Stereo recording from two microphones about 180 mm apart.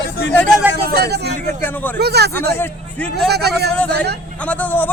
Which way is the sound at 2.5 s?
10° left (ahead or behind).